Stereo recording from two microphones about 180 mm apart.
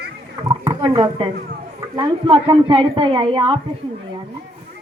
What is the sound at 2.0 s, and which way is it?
Speech, 25° right (ahead or behind).